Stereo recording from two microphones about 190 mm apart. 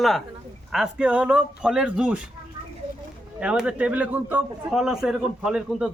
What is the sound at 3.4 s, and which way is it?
A man's voice, 5° right (ahead or behind).